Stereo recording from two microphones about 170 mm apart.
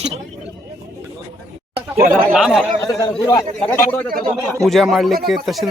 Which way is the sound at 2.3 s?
Centre (ahead or behind).